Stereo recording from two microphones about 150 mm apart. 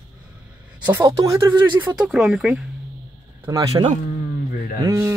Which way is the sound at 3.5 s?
20° right (ahead or behind).